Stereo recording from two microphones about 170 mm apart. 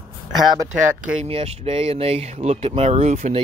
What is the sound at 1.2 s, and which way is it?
Speech, 35° right (ahead or behind).